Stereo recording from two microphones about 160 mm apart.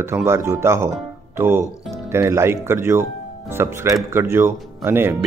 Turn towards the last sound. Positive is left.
turn(degrees=-15)  # may be behind; listen again after turning